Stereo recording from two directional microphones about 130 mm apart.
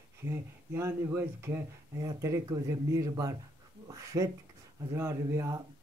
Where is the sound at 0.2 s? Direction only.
20° right (ahead or behind).